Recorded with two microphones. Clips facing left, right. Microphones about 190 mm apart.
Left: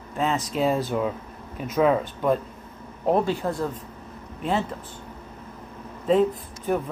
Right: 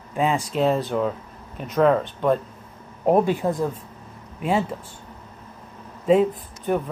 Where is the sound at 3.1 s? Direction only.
15° right (ahead or behind).